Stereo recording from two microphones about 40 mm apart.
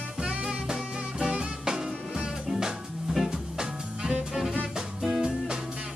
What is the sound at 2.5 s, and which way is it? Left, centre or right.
Music, centre.